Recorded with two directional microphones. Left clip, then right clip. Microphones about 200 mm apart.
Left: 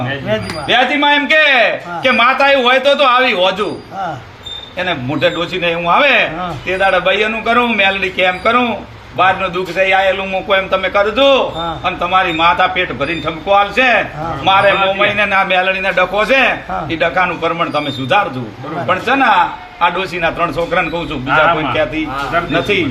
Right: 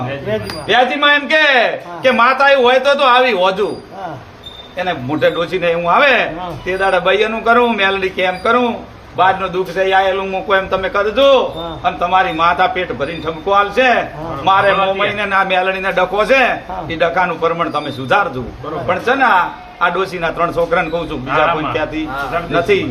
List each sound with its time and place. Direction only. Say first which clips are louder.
0.3 s speech: left 1 dB; 20° right (ahead or behind)
5.2 s speech: right 1 dB; 25° right (ahead or behind)
19.8 s speech: left 1 dB; 20° right (ahead or behind)
22.5 s speech: right 3 dB; 20° right (ahead or behind)